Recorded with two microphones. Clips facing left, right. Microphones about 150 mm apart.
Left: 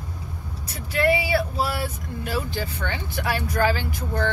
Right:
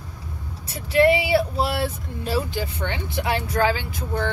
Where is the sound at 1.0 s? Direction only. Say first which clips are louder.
Right 4 dB; 25° right (ahead or behind).